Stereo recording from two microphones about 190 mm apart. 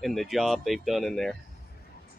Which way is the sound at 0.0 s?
Centre (ahead or behind).